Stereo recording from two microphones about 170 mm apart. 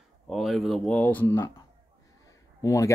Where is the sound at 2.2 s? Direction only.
20° left (ahead or behind).